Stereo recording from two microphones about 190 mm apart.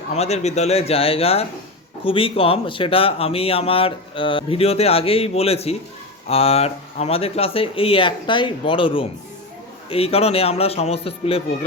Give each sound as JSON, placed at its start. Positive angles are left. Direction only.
{"t": 0.1, "sound": "a man's voice", "side_deg": 35}